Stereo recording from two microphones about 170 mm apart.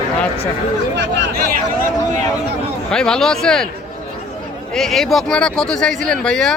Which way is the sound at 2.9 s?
5° left (ahead or behind).